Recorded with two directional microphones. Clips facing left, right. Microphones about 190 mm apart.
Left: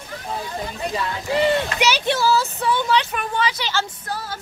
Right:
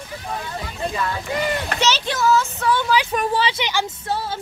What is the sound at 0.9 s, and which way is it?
Speech, 25° left (ahead or behind).